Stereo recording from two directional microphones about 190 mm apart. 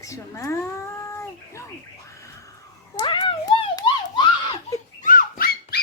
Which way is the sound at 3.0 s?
25° left (ahead or behind).